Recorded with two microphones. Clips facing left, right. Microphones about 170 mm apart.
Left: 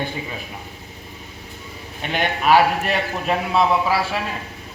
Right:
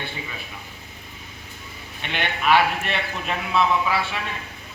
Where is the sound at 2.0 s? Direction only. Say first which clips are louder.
Left 5 dB; 40° left (ahead or behind).